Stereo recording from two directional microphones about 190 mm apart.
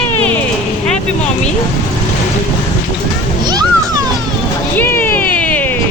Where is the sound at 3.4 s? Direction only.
20° right (ahead or behind).